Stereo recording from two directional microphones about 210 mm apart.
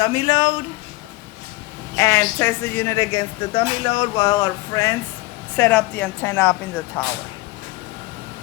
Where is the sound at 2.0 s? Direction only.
15° left (ahead or behind).